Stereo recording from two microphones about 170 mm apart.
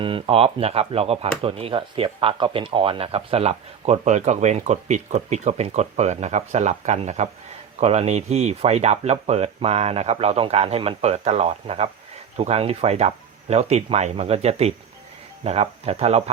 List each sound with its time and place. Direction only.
0.0 s speech: 30° right (ahead or behind)